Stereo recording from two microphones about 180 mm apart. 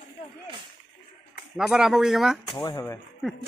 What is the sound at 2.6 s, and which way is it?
Speech, 20° left (ahead or behind).